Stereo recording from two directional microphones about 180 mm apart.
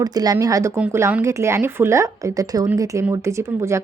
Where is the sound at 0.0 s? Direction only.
20° right (ahead or behind).